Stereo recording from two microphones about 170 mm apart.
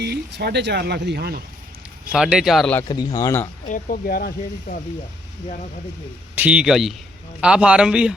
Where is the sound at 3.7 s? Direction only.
55° left (ahead or behind).